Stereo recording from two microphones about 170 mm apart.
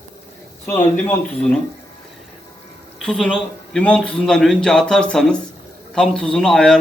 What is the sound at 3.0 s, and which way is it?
A man's voice, 5° left (ahead or behind).